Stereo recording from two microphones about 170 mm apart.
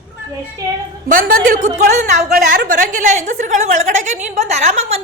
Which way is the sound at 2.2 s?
65° right (ahead or behind).